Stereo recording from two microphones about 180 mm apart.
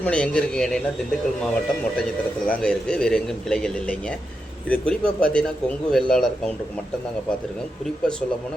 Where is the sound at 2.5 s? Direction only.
5° left (ahead or behind).